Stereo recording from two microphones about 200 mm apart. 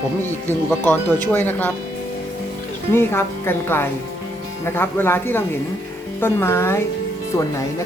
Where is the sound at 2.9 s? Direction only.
10° left (ahead or behind).